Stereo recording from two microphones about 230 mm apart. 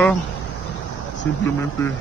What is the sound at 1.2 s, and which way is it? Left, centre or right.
Speech, centre.